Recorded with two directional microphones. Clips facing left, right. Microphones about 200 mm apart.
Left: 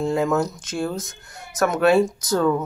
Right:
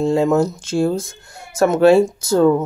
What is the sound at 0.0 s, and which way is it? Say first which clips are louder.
Speech: right 5 dB; 25° right (ahead or behind).